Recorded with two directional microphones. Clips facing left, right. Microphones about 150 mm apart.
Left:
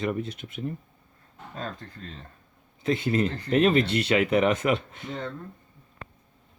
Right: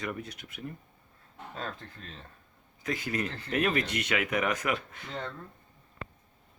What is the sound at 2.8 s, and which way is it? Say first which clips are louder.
Speech: left 8 dB; 25° left (ahead or behind).